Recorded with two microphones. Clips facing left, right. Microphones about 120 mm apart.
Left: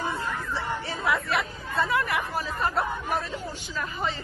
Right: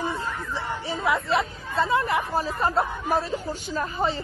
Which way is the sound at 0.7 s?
20° right (ahead or behind).